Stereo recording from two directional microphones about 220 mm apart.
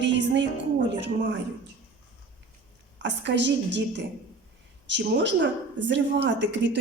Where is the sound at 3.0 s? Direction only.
55° right (ahead or behind).